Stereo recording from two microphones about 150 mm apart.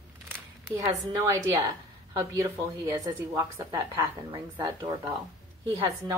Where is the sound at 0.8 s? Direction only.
25° right (ahead or behind).